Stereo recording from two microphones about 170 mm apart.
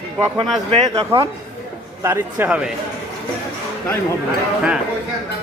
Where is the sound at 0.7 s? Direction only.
40° right (ahead or behind).